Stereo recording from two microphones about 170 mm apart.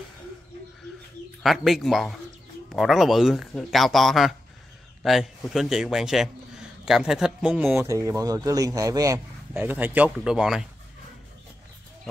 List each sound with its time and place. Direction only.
1.4 s a man's voice: centre (ahead or behind)
7.8 s a man's voice: 20° right (ahead or behind)